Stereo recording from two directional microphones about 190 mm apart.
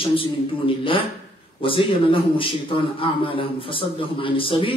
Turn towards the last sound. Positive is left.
turn(degrees=25)  # may be behind; listen again after turning